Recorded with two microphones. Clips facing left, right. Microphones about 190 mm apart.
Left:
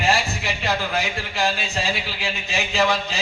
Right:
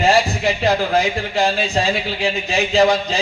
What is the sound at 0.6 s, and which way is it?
A man's voice, 35° right (ahead or behind).